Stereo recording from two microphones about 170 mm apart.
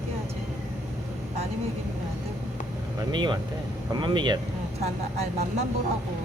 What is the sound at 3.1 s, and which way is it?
Speech, 25° right (ahead or behind).